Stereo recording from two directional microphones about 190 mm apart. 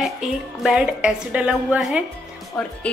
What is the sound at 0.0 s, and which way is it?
Speech, centre (ahead or behind).